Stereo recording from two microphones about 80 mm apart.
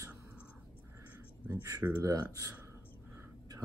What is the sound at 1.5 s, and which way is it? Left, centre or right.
Speech, right.